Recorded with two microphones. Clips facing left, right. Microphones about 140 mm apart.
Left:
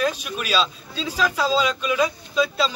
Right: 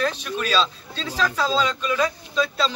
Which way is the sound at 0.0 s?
10° left (ahead or behind).